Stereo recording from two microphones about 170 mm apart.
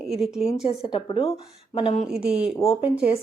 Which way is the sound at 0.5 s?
40° left (ahead or behind).